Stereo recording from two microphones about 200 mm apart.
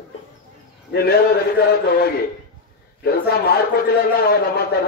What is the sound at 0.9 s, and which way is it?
A man's voice, 50° left (ahead or behind).